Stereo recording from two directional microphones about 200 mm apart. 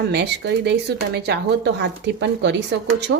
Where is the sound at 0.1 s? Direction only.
55° right (ahead or behind).